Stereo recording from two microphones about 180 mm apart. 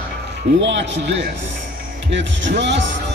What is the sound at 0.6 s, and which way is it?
Speech, 90° right.